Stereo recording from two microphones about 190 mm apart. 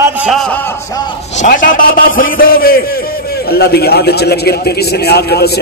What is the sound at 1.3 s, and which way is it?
A man's voice, 45° left (ahead or behind).